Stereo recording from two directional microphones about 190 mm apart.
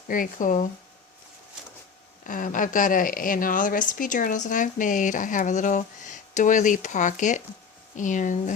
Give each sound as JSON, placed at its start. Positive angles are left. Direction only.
{"t": 0.1, "sound": "a woman's voice", "side_deg": 45}
{"t": 2.2, "sound": "a woman's voice", "side_deg": 45}